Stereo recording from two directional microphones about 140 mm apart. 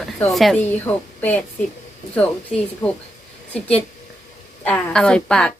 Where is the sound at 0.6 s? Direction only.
10° left (ahead or behind).